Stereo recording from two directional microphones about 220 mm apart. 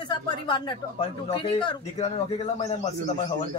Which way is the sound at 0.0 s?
20° left (ahead or behind).